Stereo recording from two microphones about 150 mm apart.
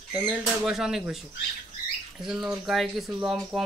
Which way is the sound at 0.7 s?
5° right (ahead or behind).